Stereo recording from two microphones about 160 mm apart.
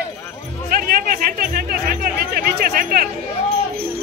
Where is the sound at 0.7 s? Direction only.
65° right (ahead or behind).